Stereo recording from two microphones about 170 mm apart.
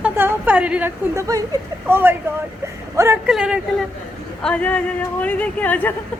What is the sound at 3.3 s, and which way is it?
Speech, 5° right (ahead or behind).